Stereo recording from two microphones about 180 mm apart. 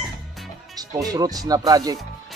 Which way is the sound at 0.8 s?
20° right (ahead or behind).